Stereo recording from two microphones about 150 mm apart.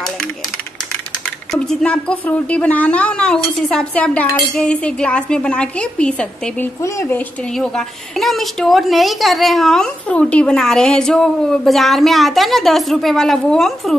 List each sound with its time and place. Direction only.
1.5 s a woman's voice: 5° left (ahead or behind)
7.5 s a woman's voice: 5° left (ahead or behind)